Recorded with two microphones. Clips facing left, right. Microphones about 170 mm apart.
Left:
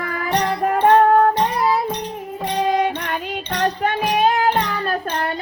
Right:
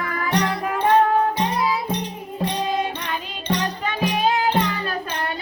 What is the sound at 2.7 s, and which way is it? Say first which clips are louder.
Music: left 5 dB; 65° left (ahead or behind).